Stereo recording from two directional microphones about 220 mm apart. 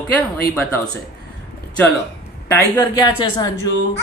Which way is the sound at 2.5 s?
15° left (ahead or behind).